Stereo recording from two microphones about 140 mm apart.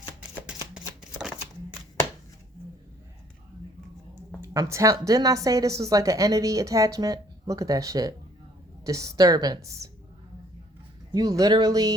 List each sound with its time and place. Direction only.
0.2 s a sound: 5° right (ahead or behind)
4.5 s a woman's voice: 20° right (ahead or behind)
11.1 s a woman's voice: 25° right (ahead or behind)